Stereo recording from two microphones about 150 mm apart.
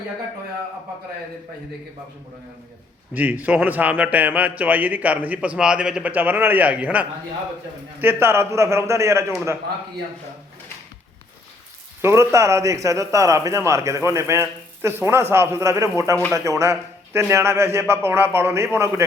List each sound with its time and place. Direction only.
3.1 s a man's voice: 10° right (ahead or behind)
12.0 s a man's voice: 20° right (ahead or behind)